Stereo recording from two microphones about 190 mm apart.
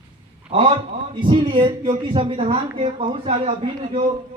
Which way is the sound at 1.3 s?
25° right (ahead or behind).